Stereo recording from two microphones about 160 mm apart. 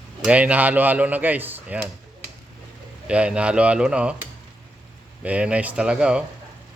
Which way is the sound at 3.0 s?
5° right (ahead or behind).